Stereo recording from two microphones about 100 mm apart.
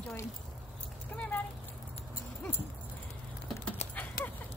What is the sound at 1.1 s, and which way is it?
Speech, 15° left (ahead or behind).